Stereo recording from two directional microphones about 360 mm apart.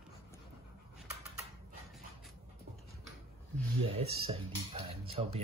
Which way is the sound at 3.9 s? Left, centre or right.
Centre.